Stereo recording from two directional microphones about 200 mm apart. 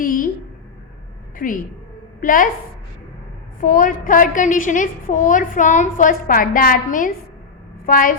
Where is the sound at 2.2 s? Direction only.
40° left (ahead or behind).